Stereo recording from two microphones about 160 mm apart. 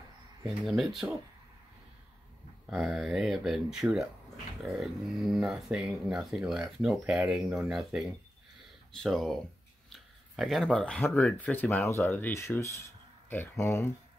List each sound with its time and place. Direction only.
0.7 s speech: centre (ahead or behind)
2.6 s speech: centre (ahead or behind); by 13.9 s 15° left (ahead or behind)